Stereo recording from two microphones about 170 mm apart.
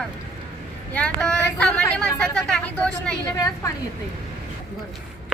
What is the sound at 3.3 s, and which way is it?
Speech, 20° left (ahead or behind).